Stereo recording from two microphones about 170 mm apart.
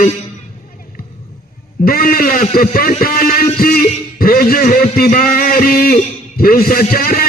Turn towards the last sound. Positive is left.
turn(degrees=60)  # may be behind; listen again after turning